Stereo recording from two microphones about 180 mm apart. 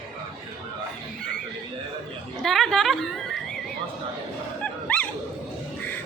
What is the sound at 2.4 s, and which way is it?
A woman's voice, centre (ahead or behind).